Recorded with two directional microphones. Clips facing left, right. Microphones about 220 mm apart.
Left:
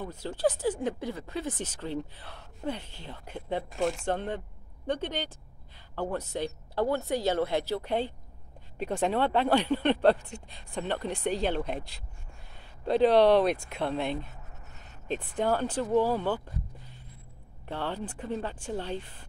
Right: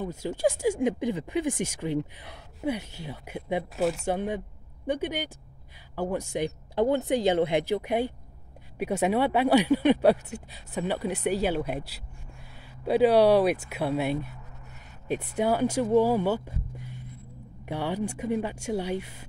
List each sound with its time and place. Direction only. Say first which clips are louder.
0.0 s speech: right 2 dB; 10° right (ahead or behind)
17.6 s speech: right 5 dB; 15° right (ahead or behind)